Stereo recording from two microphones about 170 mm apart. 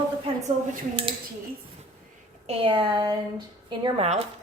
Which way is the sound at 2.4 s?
30° right (ahead or behind).